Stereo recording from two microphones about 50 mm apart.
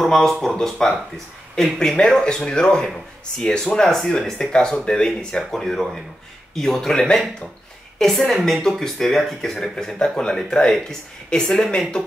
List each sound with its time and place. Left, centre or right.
0.0 s speech: centre
3.8 s a woman's voice: centre
4.5 s speech: centre
5.6 s a woman's voice: centre